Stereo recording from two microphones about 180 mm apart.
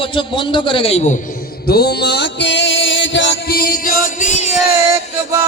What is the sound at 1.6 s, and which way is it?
Music, 60° left (ahead or behind).